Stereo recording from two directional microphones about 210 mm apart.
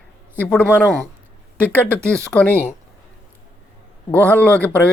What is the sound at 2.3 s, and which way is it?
Speech, 5° left (ahead or behind).